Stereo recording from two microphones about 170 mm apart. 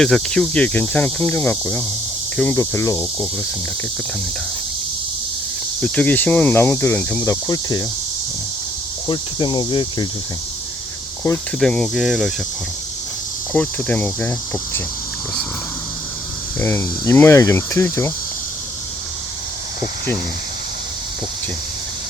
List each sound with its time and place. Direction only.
0.0 s speech: 5° left (ahead or behind)
5.8 s speech: 5° left (ahead or behind); by 7.9 s 25° left (ahead or behind)
9.0 s speech: 30° left (ahead or behind)
11.6 s speech: 5° left (ahead or behind)
13.5 s speech: 10° left (ahead or behind)
16.6 s speech: 15° left (ahead or behind)